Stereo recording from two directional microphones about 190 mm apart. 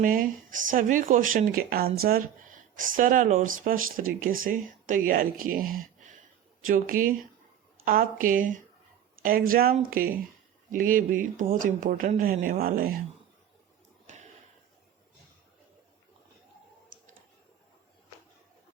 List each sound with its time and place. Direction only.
0.0 s speech: 45° right (ahead or behind)